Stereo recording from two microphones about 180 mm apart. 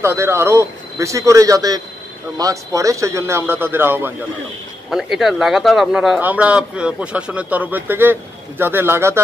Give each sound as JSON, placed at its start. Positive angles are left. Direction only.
{"t": 0.0, "sound": "speech", "side_deg": -15}
{"t": 4.8, "sound": "speech", "side_deg": 0}